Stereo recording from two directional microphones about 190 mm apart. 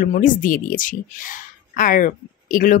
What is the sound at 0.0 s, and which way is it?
Speech, 45° left (ahead or behind).